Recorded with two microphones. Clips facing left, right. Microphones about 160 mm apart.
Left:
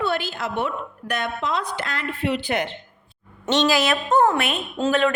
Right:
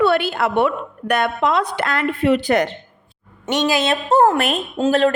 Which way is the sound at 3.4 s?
15° right (ahead or behind).